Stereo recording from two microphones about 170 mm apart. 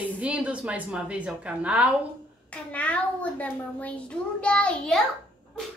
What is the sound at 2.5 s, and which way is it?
A child's voice, 10° left (ahead or behind).